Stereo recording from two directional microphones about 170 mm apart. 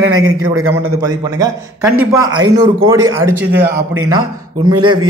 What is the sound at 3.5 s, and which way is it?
Speech, 90° right.